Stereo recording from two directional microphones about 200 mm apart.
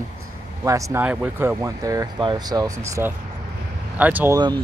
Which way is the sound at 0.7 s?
15° right (ahead or behind).